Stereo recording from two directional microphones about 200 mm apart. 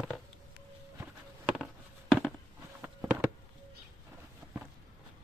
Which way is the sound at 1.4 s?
5° right (ahead or behind).